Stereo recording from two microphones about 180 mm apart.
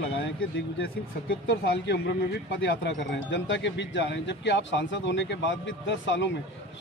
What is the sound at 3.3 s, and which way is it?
Speech, 85° left.